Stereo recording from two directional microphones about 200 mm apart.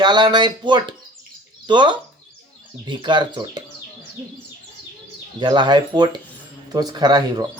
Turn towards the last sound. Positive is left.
turn(degrees=-20)  # may be behind; listen again after turning